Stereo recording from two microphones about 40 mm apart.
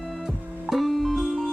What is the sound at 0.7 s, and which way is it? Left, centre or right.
Music, centre.